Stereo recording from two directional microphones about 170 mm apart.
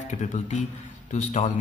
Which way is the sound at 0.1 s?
45° left (ahead or behind).